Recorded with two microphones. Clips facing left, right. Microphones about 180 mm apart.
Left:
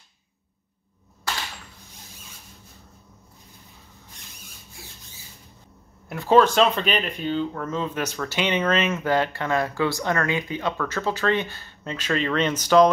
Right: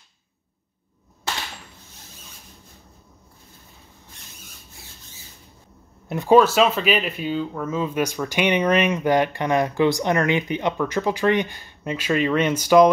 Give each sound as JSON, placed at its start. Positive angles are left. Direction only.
{"t": 6.0, "sound": "speech", "side_deg": -15}